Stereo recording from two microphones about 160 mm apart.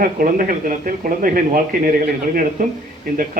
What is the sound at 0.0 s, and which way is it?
Speech, 60° right (ahead or behind).